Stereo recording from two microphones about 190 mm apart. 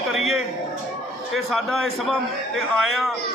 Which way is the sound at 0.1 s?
Centre (ahead or behind).